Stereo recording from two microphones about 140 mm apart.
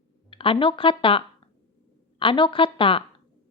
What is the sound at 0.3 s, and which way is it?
Speech, 40° left (ahead or behind).